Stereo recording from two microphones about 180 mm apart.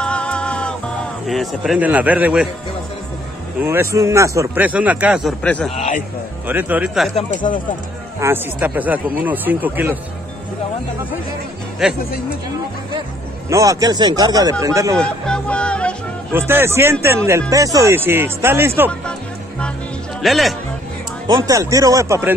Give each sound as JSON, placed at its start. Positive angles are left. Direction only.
{"t": 0.0, "sound": "music", "side_deg": 5}
{"t": 3.6, "sound": "speech", "side_deg": -15}
{"t": 5.4, "sound": "a man's voice", "side_deg": 5}
{"t": 5.8, "sound": "speech", "side_deg": 45}
{"t": 6.4, "sound": "speech", "side_deg": -10}
{"t": 7.3, "sound": "speech", "side_deg": 25}
{"t": 8.2, "sound": "speech", "side_deg": -10}
{"t": 11.8, "sound": "speech", "side_deg": -5}
{"t": 13.5, "sound": "speech", "side_deg": -20}
{"t": 15.0, "sound": "music", "side_deg": 5}
{"t": 16.3, "sound": "speech", "side_deg": -15}
{"t": 20.2, "sound": "speech", "side_deg": 0}
{"t": 21.3, "sound": "speech", "side_deg": -20}